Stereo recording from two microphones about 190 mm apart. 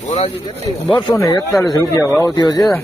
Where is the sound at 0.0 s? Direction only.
40° left (ahead or behind).